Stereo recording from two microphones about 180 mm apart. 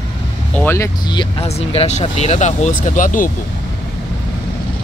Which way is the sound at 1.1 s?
30° left (ahead or behind).